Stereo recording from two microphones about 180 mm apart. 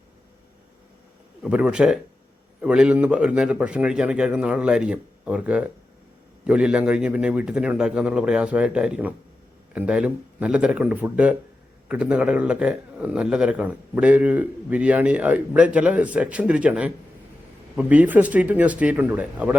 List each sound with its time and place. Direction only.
1.4 s a man's voice: 5° right (ahead or behind)